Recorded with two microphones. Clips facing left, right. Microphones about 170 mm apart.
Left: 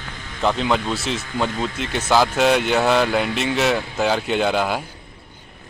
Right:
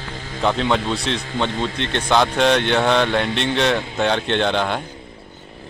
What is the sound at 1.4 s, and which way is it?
Speech, 30° right (ahead or behind).